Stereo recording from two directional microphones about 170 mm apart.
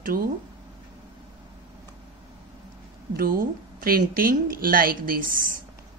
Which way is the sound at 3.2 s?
55° right (ahead or behind).